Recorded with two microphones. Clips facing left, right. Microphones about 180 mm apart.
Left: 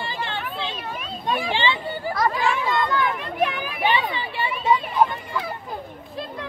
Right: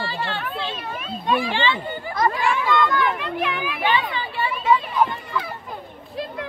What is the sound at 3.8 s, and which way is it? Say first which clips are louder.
Speech: left 1 dB; 20° left (ahead or behind).